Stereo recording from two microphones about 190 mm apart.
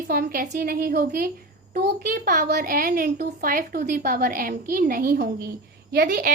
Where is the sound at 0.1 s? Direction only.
50° right (ahead or behind).